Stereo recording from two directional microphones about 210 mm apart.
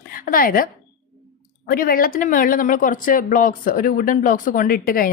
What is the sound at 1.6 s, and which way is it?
Speech, 45° left (ahead or behind).